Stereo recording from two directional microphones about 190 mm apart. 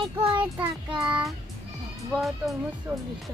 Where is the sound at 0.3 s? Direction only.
10° right (ahead or behind).